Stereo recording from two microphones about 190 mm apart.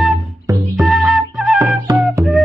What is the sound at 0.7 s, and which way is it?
Flute, centre (ahead or behind).